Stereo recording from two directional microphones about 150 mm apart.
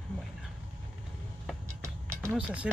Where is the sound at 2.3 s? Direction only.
5° right (ahead or behind).